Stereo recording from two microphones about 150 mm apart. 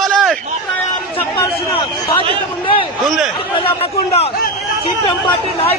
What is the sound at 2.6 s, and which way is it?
Speech, 35° left (ahead or behind).